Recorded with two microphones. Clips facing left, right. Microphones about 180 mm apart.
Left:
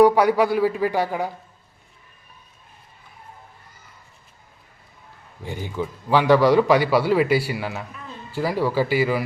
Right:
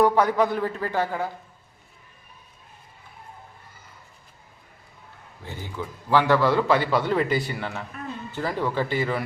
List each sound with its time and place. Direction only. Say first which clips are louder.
0.0 s a man's voice: left 4 dB; 10° left (ahead or behind)
5.4 s a man's voice: left 6 dB; 15° left (ahead or behind)